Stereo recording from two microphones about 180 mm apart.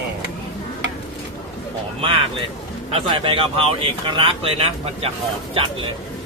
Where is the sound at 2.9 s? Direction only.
30° right (ahead or behind).